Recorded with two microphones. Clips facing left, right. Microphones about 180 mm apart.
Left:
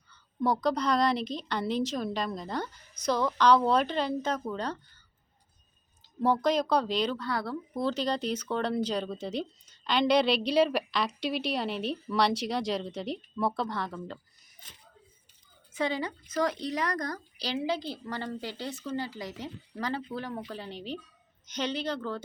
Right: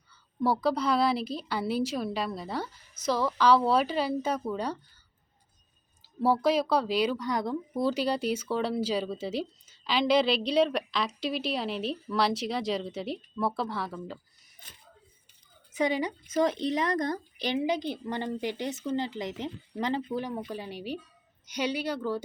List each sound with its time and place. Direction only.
0.1 s speech: 5° right (ahead or behind)
6.1 s speech: 5° right (ahead or behind)
15.7 s a woman's voice: 15° right (ahead or behind)